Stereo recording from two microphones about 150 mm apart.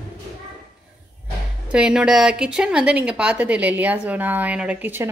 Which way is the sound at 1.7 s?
5° right (ahead or behind).